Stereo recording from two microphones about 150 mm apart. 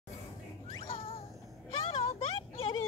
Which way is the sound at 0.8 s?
40° left (ahead or behind).